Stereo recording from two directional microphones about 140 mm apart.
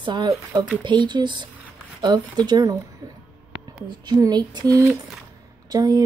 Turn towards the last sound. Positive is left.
turn(degrees=-30)  # may be behind; listen again after turning